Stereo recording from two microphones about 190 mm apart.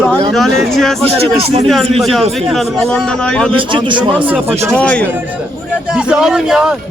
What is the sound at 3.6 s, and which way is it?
Speech, 25° right (ahead or behind).